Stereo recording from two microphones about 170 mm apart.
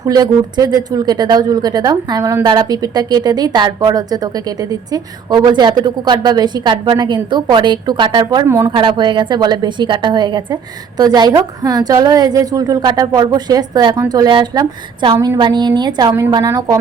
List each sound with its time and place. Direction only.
0.0 s speech: 25° right (ahead or behind)
8.4 s speech: 15° right (ahead or behind)
8.7 s speech: 30° right (ahead or behind)